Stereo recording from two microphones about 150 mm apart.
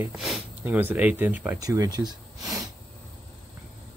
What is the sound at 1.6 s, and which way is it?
Speech, 25° right (ahead or behind).